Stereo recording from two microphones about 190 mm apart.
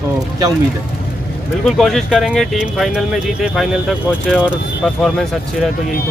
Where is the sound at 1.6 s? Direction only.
Centre (ahead or behind).